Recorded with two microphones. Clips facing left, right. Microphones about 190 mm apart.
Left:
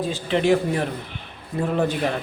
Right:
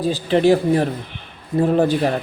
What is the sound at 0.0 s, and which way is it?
Speech, 35° right (ahead or behind).